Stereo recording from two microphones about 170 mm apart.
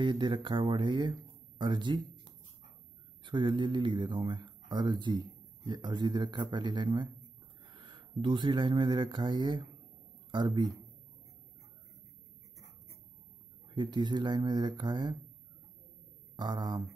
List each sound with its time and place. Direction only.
0.0 s speech: 25° right (ahead or behind)
13.7 s speech: 30° right (ahead or behind)
16.3 s speech: 25° right (ahead or behind)